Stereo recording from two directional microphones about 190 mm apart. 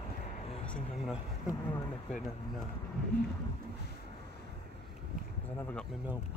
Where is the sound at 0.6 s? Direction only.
Centre (ahead or behind).